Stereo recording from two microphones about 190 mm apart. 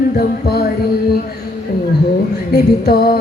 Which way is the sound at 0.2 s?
55° left (ahead or behind).